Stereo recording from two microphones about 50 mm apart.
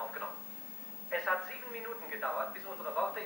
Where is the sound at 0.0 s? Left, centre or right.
Centre.